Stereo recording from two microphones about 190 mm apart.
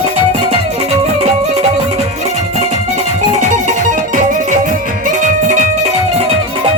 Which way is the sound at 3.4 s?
45° right (ahead or behind).